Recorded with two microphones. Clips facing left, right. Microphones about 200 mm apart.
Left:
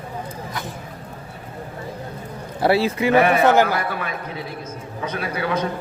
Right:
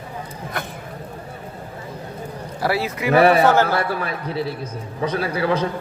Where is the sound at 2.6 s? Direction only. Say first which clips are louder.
Left 5 dB; 25° left (ahead or behind).